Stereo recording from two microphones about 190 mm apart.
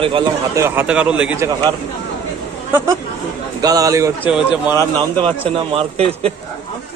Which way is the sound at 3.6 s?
20° right (ahead or behind).